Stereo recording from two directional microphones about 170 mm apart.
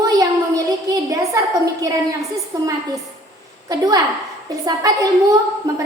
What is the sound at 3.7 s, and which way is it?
A woman's voice, 20° right (ahead or behind).